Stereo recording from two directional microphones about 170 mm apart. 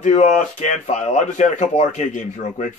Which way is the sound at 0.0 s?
45° left (ahead or behind).